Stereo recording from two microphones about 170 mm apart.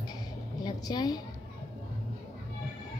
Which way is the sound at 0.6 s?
25° left (ahead or behind).